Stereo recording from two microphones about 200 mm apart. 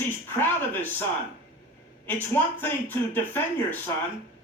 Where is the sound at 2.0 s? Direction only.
10° left (ahead or behind).